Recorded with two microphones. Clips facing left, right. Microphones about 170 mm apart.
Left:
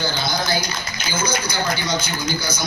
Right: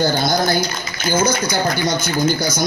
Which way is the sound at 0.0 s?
50° right (ahead or behind).